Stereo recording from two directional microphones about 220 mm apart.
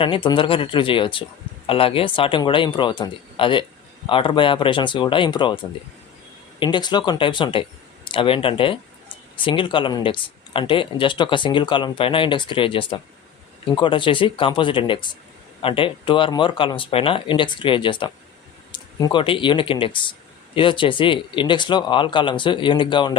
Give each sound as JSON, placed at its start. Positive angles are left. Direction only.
{"t": 0.0, "sound": "speech", "side_deg": 20}
{"t": 6.6, "sound": "speech", "side_deg": 20}